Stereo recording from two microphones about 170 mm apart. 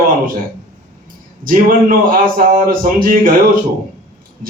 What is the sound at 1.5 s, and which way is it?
A man's voice, 55° right (ahead or behind).